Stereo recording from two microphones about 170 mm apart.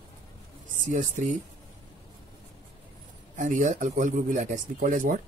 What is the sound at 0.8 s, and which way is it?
Speech, 45° right (ahead or behind).